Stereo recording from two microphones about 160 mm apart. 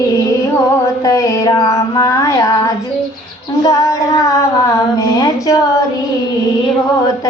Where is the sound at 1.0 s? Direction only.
20° left (ahead or behind).